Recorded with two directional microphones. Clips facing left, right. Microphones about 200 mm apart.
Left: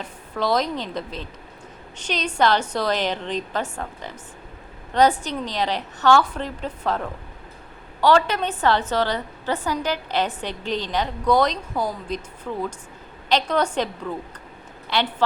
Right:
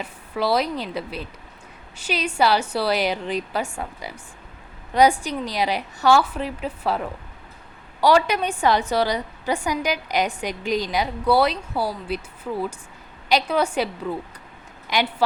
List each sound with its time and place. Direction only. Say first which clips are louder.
0.0 s a woman's voice: right 1 dB; 10° right (ahead or behind)